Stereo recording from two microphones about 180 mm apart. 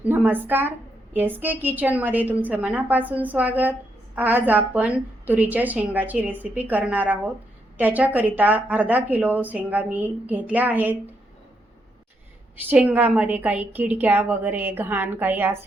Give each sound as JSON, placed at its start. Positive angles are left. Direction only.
{"t": 0.0, "sound": "a woman's voice", "side_deg": -10}
{"t": 12.7, "sound": "a woman's voice", "side_deg": -5}